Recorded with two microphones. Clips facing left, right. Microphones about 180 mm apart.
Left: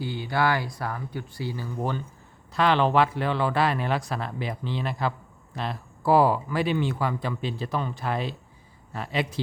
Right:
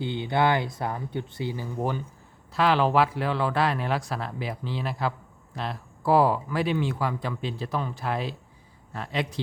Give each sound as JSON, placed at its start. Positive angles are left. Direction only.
{"t": 0.0, "sound": "speech", "side_deg": -20}